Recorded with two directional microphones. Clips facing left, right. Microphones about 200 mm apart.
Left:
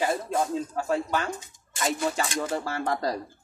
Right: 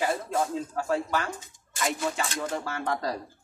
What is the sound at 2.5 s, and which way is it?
Speech, 35° left (ahead or behind).